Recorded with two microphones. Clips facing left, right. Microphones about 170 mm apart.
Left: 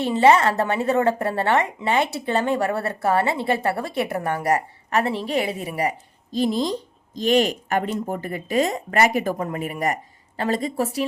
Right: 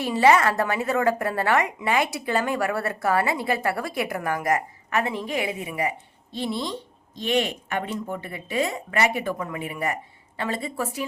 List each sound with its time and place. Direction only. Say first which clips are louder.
0.0 s speech: left 2 dB; 25° left (ahead or behind)